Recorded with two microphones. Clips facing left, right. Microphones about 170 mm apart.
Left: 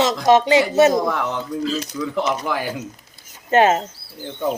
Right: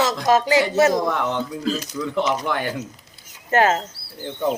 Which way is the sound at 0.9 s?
Centre (ahead or behind).